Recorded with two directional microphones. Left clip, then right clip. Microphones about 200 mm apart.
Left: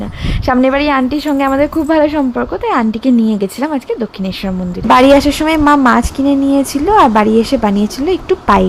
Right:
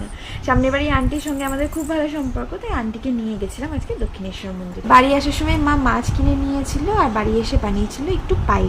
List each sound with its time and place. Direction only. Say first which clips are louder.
0.4 s a woman's voice: left 7 dB; 50° left (ahead or behind)
4.9 s speech: left 6 dB; 45° left (ahead or behind)